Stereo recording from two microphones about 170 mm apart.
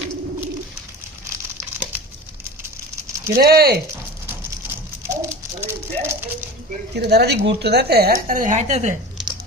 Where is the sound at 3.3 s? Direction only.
65° right (ahead or behind).